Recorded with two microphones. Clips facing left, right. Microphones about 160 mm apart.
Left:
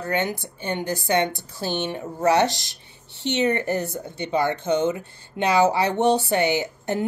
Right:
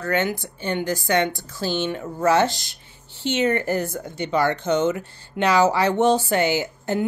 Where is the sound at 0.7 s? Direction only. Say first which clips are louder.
Right 1 dB; 25° left (ahead or behind).